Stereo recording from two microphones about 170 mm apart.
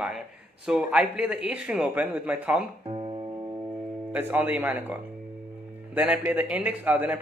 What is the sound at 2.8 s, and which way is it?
Music, 30° right (ahead or behind).